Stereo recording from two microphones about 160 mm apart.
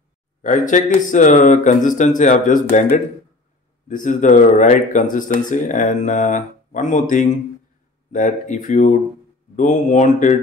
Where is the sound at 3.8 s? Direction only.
50° left (ahead or behind).